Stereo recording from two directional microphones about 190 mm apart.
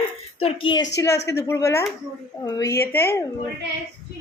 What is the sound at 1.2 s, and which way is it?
A woman's voice, 15° left (ahead or behind).